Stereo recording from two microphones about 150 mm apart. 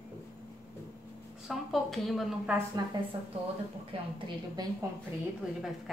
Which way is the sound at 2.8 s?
25° right (ahead or behind).